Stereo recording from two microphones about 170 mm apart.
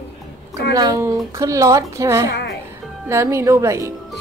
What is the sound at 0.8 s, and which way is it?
A woman's voice, 20° right (ahead or behind).